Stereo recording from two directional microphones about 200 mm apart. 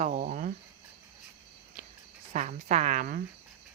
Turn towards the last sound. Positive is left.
turn(degrees=-40)  # may be behind; listen again after turning